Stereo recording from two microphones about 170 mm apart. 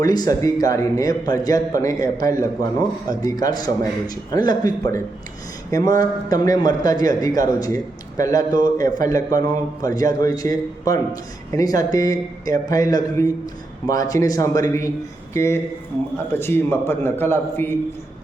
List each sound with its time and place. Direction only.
0.0 s a man's voice: 20° left (ahead or behind)